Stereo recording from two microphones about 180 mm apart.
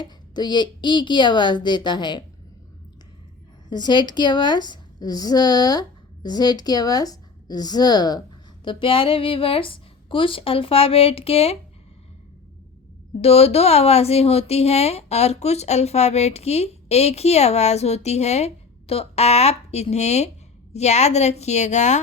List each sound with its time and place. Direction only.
0.0 s a woman's voice: 25° left (ahead or behind)
3.7 s a woman's voice: 25° left (ahead or behind)
13.2 s speech: 35° left (ahead or behind)